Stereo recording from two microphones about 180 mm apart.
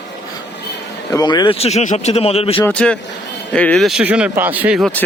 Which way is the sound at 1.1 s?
20° left (ahead or behind).